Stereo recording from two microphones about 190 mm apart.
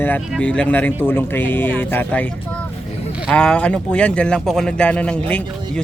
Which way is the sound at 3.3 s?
5° left (ahead or behind).